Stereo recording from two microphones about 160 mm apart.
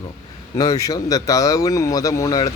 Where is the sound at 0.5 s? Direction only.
20° left (ahead or behind).